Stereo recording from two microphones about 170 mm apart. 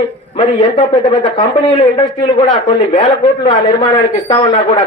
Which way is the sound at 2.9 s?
45° left (ahead or behind).